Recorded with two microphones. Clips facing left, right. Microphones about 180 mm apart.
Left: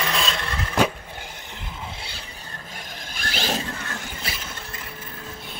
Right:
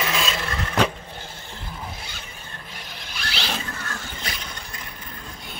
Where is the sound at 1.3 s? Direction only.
20° left (ahead or behind); by 3.6 s 45° left (ahead or behind).